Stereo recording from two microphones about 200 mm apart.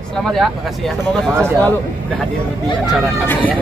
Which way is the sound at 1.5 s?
15° right (ahead or behind).